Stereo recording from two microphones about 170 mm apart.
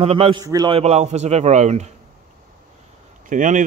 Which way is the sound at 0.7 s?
40° right (ahead or behind).